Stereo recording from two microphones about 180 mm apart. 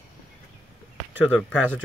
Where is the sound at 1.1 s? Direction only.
5° right (ahead or behind).